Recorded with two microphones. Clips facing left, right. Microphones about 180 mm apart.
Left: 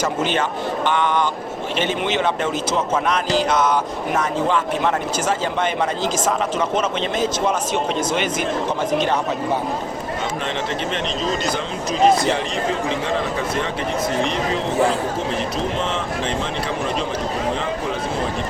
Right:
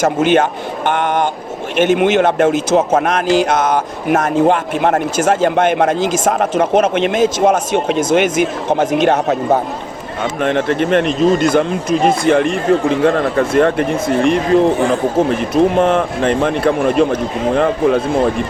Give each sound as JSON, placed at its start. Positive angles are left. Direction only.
{"t": 0.0, "sound": "speech", "side_deg": -55}
{"t": 0.9, "sound": "a sound", "side_deg": -55}
{"t": 1.7, "sound": "speech", "side_deg": -55}
{"t": 7.4, "sound": "speech", "side_deg": -50}
{"t": 10.4, "sound": "speech", "side_deg": -55}